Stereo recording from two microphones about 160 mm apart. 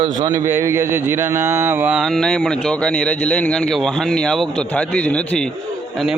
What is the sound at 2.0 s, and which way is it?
Speech, 5° left (ahead or behind).